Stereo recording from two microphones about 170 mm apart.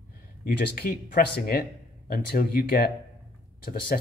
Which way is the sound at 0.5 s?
60° left (ahead or behind).